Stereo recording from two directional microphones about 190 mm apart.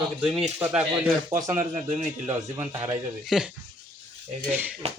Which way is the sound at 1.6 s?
40° right (ahead or behind).